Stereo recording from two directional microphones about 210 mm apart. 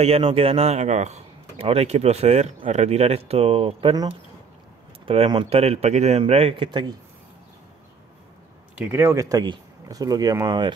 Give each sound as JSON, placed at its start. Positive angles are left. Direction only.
{"t": 0.0, "sound": "a man's voice", "side_deg": -25}
{"t": 8.7, "sound": "speech", "side_deg": -10}